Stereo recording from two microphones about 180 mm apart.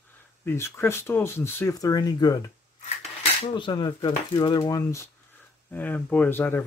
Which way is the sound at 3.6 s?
25° left (ahead or behind).